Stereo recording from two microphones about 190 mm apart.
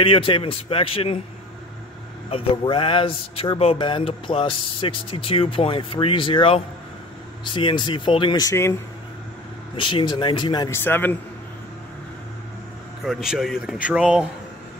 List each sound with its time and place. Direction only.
0.0 s speech: 30° left (ahead or behind)
2.3 s speech: 25° left (ahead or behind)
9.8 s speech: 25° left (ahead or behind); by 11.1 s 10° left (ahead or behind)
13.0 s a man's voice: centre (ahead or behind)